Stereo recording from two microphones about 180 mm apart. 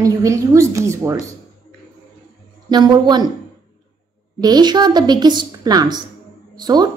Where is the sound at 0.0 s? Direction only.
15° right (ahead or behind).